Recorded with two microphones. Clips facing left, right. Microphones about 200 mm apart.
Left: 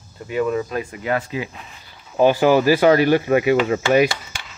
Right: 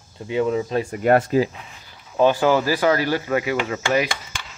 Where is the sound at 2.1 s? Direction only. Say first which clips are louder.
Left 2 dB; 15° left (ahead or behind).